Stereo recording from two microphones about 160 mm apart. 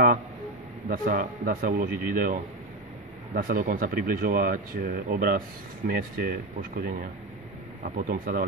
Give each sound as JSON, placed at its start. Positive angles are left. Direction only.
{"t": 0.8, "sound": "speech", "side_deg": -60}
{"t": 8.1, "sound": "speech", "side_deg": -65}